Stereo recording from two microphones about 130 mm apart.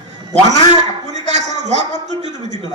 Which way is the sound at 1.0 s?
65° right (ahead or behind).